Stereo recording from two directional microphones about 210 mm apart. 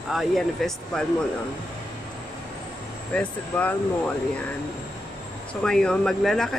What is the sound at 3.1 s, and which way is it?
Speech, 5° left (ahead or behind).